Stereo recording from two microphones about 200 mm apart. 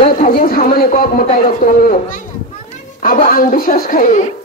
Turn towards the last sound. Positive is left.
turn(degrees=40)  # may be behind; listen again after turning